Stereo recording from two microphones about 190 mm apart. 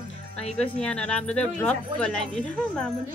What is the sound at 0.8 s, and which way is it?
Speech, 5° left (ahead or behind).